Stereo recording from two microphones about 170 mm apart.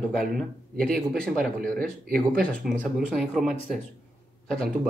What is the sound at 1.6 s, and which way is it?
Speech, 60° right (ahead or behind).